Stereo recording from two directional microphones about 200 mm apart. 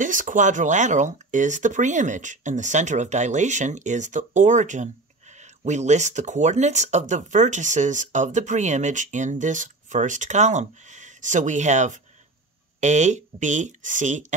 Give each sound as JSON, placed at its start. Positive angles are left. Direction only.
{"t": 0.0, "sound": "speech", "side_deg": -40}